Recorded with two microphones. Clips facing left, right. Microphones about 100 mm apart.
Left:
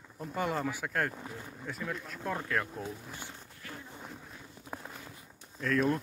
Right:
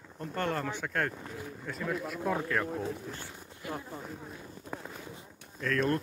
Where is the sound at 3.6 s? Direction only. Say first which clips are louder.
Right 9 dB; 15° right (ahead or behind).